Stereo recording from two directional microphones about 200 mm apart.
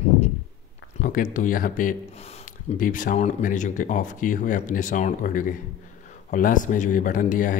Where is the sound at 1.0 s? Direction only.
40° left (ahead or behind).